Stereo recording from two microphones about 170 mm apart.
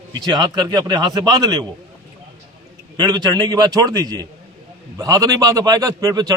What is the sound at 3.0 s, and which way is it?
A man's voice, 25° right (ahead or behind).